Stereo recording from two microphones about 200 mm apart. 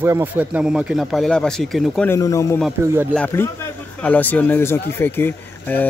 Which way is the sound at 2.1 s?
15° left (ahead or behind).